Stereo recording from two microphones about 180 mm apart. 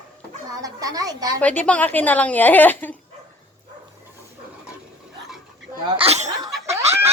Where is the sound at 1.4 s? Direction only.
10° left (ahead or behind).